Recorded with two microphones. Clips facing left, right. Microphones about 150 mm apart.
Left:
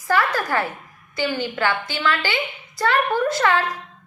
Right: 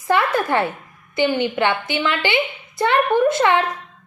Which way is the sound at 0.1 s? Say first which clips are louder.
Right 3 dB; 25° right (ahead or behind).